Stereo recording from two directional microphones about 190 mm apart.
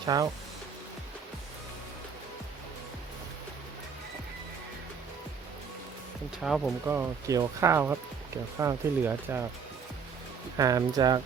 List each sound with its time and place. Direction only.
0.0 s speech: 20° right (ahead or behind)
6.4 s speech: centre (ahead or behind)
6.8 s speech: 10° right (ahead or behind)
10.6 s speech: 20° right (ahead or behind)